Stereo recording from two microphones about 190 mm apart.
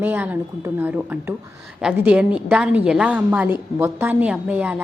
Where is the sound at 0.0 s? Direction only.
10° right (ahead or behind).